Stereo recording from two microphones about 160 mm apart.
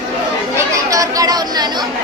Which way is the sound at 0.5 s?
20° right (ahead or behind).